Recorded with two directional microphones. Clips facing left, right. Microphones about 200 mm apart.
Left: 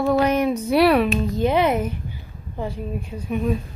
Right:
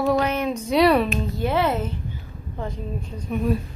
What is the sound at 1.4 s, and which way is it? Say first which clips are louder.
A woman's voice: left 3 dB; 15° left (ahead or behind).